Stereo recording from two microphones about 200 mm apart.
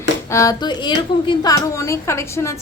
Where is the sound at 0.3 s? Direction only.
15° left (ahead or behind).